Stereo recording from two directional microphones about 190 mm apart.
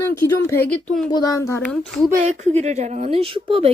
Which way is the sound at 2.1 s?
40° right (ahead or behind).